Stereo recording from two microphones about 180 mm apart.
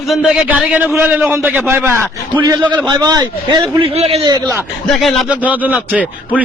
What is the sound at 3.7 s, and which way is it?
Speech, 35° right (ahead or behind).